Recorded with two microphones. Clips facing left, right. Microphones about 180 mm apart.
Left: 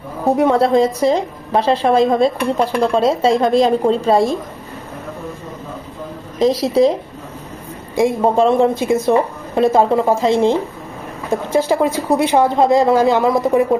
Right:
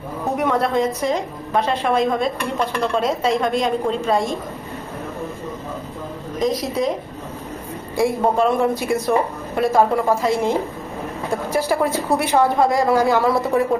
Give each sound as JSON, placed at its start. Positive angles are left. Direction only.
{"t": 0.4, "sound": "a woman's voice", "side_deg": 30}
{"t": 6.4, "sound": "a woman's voice", "side_deg": 30}
{"t": 7.9, "sound": "a woman's voice", "side_deg": 25}